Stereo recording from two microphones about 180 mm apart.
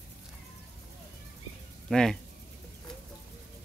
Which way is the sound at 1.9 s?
5° left (ahead or behind).